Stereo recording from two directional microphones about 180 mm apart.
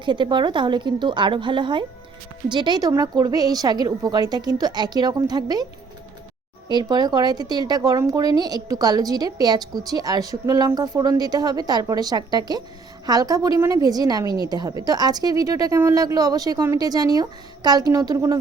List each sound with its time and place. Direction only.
0.0 s speech: 25° right (ahead or behind)
6.7 s speech: 25° right (ahead or behind)
14.3 s a woman's voice: 25° left (ahead or behind)
14.5 s speech: 20° right (ahead or behind)